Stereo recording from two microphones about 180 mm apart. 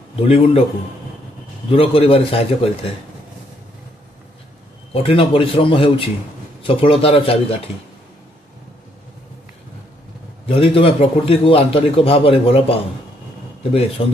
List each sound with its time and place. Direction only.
0.1 s a man's voice: 35° left (ahead or behind)
1.7 s a man's voice: 30° left (ahead or behind)
4.9 s a man's voice: 30° left (ahead or behind)
10.4 s a man's voice: 30° left (ahead or behind)
14.0 s a man's voice: 30° left (ahead or behind)